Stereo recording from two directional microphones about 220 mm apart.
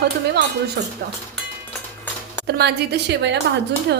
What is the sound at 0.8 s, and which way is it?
Speech, 45° right (ahead or behind).